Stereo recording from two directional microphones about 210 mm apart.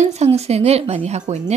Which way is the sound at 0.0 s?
30° right (ahead or behind).